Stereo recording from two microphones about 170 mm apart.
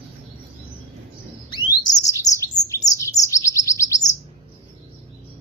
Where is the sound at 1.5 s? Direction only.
25° left (ahead or behind).